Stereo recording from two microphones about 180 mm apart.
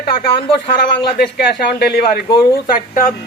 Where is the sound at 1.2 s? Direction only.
65° left (ahead or behind).